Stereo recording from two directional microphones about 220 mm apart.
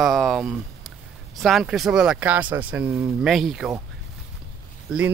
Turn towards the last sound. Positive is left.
turn(degrees=-5)  # may be behind; listen again after turning